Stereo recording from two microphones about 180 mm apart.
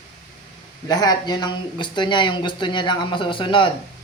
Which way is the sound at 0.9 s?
20° left (ahead or behind).